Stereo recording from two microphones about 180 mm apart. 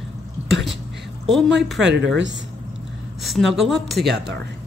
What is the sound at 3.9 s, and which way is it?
Speech, 65° right (ahead or behind).